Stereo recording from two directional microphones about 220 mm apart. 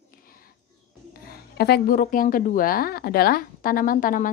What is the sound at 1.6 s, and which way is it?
A woman's voice, 45° left (ahead or behind).